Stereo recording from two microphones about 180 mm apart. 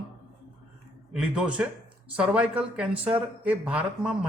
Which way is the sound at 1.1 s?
5° right (ahead or behind).